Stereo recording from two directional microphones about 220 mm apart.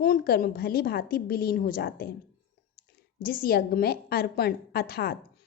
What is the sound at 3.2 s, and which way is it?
A woman's voice, 40° left (ahead or behind).